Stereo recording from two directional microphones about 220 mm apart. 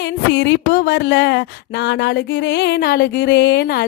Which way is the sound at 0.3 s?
50° left (ahead or behind).